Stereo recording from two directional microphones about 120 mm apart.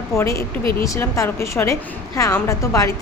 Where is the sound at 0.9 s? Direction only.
25° left (ahead or behind).